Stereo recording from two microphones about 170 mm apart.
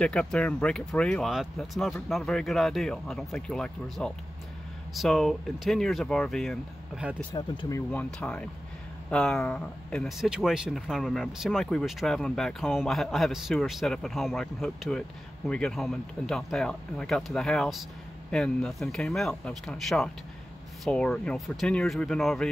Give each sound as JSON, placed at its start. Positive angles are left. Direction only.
{"t": 0.0, "sound": "speech", "side_deg": 5}
{"t": 7.3, "sound": "speech", "side_deg": 20}
{"t": 7.9, "sound": "speech", "side_deg": 5}